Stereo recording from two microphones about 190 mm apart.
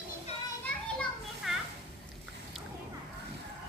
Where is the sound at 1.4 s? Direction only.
Centre (ahead or behind).